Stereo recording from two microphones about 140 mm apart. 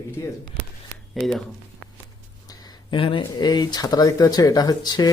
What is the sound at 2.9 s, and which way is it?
Speech, 35° left (ahead or behind).